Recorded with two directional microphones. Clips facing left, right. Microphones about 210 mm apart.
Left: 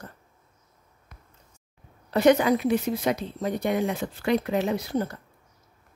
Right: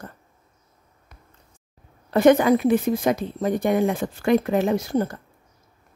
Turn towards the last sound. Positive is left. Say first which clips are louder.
# right 5 dB
turn(degrees=-45)  # may be behind; listen again after turning